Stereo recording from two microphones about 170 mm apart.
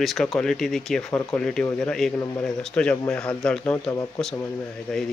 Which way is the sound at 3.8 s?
20° left (ahead or behind).